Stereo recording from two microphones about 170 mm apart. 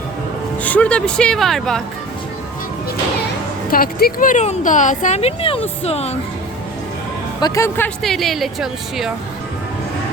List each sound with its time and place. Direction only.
0.6 s speech: 10° left (ahead or behind)
3.7 s speech: 60° left (ahead or behind); by 6.1 s 35° left (ahead or behind)
7.4 s speech: 15° left (ahead or behind)
8.0 s speech: centre (ahead or behind)